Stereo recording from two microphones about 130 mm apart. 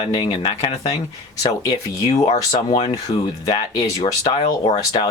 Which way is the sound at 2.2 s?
60° left (ahead or behind).